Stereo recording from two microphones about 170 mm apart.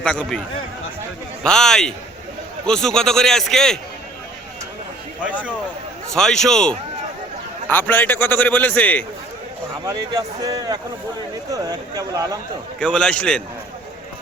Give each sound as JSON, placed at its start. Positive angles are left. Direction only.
{"t": 0.0, "sound": "a man's voice", "side_deg": 5}
{"t": 1.5, "sound": "a man's voice", "side_deg": 5}
{"t": 6.1, "sound": "a man's voice", "side_deg": 5}
{"t": 9.8, "sound": "speech", "side_deg": -20}
{"t": 12.8, "sound": "a man's voice", "side_deg": 5}